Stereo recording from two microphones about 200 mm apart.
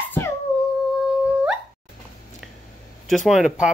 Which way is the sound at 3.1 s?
Centre (ahead or behind).